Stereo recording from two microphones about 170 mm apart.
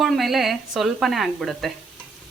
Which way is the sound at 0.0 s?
Centre (ahead or behind).